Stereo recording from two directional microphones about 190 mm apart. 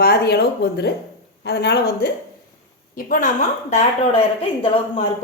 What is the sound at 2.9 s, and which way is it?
Speech, 45° left (ahead or behind).